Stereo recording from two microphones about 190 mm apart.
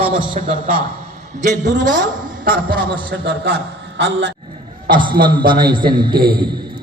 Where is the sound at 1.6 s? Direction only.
40° right (ahead or behind); by 3.6 s 60° right (ahead or behind).